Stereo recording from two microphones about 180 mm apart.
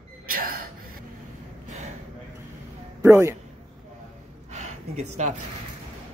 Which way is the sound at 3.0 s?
15° right (ahead or behind).